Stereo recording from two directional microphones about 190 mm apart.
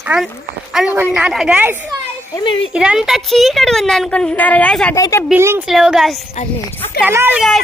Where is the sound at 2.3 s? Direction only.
25° left (ahead or behind).